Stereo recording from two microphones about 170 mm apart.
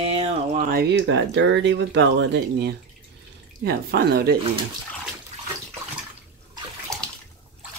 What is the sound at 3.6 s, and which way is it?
Speech, 70° right (ahead or behind).